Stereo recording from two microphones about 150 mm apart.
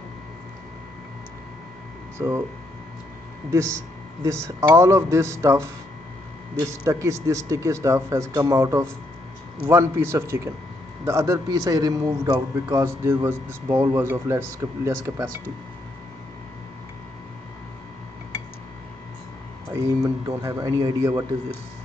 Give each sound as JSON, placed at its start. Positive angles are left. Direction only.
{"t": 2.1, "sound": "speech", "side_deg": -20}
{"t": 4.2, "sound": "a man's voice", "side_deg": -20}
{"t": 19.7, "sound": "a man's voice", "side_deg": -20}